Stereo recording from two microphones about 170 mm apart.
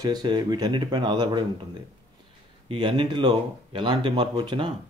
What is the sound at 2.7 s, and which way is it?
A man's voice, 30° right (ahead or behind).